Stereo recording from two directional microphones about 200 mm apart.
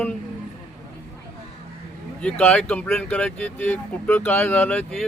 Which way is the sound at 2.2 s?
5° left (ahead or behind).